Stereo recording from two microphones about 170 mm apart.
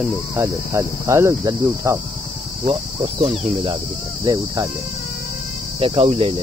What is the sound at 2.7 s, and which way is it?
Cricket, 30° right (ahead or behind).